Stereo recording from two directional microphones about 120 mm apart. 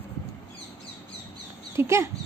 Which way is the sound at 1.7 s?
20° right (ahead or behind).